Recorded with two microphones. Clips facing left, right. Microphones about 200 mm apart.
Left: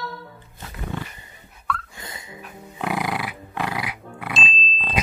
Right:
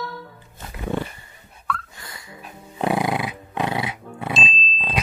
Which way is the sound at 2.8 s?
25° right (ahead or behind).